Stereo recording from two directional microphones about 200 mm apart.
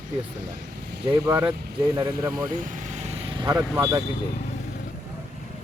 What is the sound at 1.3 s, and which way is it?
Speech, 15° right (ahead or behind).